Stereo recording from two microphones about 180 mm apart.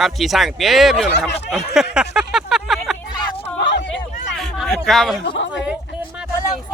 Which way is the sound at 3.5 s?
70° left (ahead or behind).